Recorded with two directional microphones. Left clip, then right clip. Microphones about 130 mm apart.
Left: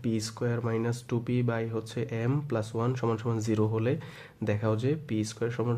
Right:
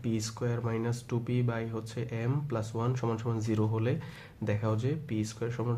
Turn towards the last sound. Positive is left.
turn(degrees=35)  # may be behind; listen again after turning